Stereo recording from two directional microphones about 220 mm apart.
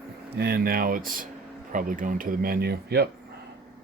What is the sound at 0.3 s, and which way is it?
Speech, 45° right (ahead or behind).